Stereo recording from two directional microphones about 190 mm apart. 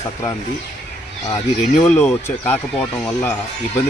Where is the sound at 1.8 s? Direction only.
10° left (ahead or behind).